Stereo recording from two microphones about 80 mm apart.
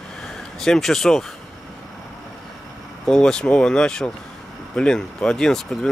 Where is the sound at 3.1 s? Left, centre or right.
Centre.